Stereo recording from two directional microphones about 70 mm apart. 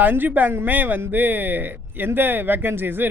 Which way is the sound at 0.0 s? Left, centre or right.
Right.